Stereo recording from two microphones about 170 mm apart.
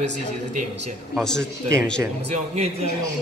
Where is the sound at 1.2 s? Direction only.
5° left (ahead or behind).